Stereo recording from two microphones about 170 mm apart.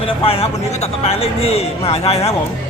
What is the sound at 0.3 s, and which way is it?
Speech, 35° left (ahead or behind).